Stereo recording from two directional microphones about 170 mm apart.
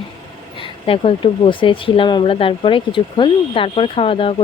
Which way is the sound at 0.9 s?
30° left (ahead or behind).